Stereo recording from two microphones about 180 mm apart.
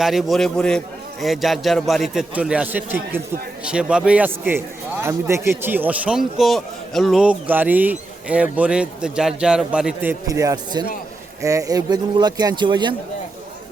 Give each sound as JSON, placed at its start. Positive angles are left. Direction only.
{"t": 0.0, "sound": "a man's voice", "side_deg": 0}